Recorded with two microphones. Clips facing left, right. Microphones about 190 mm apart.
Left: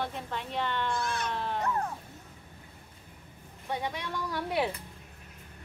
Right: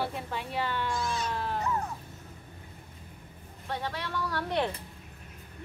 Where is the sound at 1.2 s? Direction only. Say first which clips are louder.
Even; centre (ahead or behind).